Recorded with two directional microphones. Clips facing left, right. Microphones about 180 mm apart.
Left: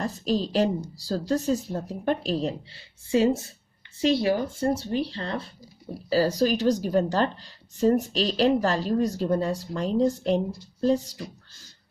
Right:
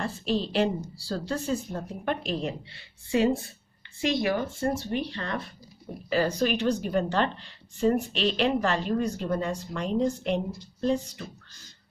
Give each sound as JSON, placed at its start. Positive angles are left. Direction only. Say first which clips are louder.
{"t": 0.0, "sound": "speech", "louder": "left 2 dB", "side_deg": 40}